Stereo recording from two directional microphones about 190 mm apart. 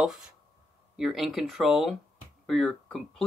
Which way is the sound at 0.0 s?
Centre (ahead or behind).